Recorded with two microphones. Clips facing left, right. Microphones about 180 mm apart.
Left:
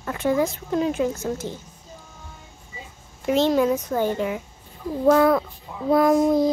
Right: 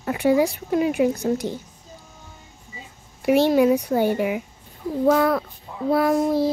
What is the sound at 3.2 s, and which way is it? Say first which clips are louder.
A woman's voice: right 3 dB; 10° right (ahead or behind).